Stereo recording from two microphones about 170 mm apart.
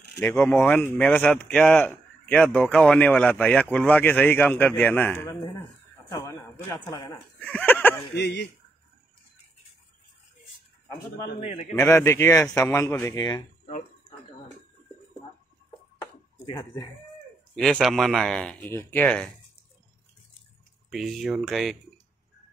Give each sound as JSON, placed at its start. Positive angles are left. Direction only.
{"t": 0.3, "sound": "a man's voice", "side_deg": 10}
{"t": 7.3, "sound": "a man's voice", "side_deg": 10}
{"t": 8.1, "sound": "speech", "side_deg": 80}
{"t": 11.3, "sound": "a man's voice", "side_deg": 45}
{"t": 11.9, "sound": "a man's voice", "side_deg": 15}
{"t": 17.6, "sound": "speech", "side_deg": 5}
{"t": 20.9, "sound": "speech", "side_deg": 0}